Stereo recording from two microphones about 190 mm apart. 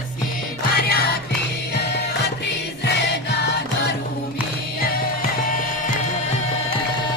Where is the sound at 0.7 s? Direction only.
55° left (ahead or behind).